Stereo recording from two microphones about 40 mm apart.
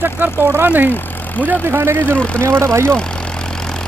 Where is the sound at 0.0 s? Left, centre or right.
Right.